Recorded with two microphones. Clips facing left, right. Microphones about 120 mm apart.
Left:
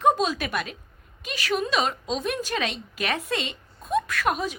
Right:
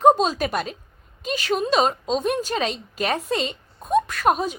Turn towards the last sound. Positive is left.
turn(degrees=-25)  # may be behind; listen again after turning